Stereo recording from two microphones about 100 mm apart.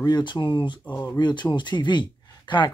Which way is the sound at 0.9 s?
30° left (ahead or behind).